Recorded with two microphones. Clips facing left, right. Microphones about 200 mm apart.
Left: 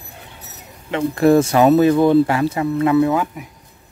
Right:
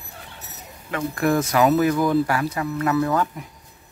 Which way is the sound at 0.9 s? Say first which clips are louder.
Left 8 dB; 25° left (ahead or behind).